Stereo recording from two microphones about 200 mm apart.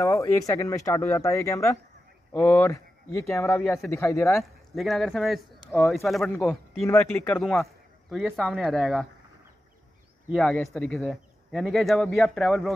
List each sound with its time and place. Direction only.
0.0 s speech: 15° left (ahead or behind)
4.7 s speech: centre (ahead or behind)
10.2 s speech: centre (ahead or behind)